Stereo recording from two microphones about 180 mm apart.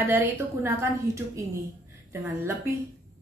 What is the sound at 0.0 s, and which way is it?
A woman's voice, 10° right (ahead or behind).